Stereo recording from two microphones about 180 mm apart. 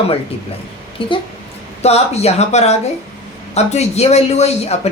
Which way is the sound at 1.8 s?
35° left (ahead or behind).